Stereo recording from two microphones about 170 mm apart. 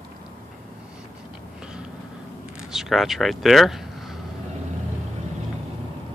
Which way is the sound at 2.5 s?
Centre (ahead or behind).